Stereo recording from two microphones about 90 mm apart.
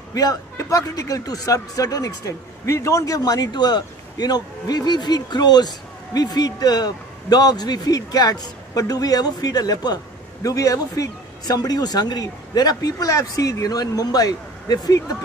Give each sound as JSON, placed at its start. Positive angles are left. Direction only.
{"t": 0.1, "sound": "a man's voice", "side_deg": 45}